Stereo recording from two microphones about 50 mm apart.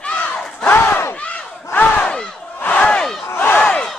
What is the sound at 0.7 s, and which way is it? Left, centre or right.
Battle cry, left.